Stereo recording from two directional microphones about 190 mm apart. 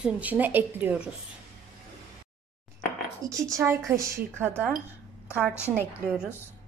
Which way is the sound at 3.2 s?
15° right (ahead or behind).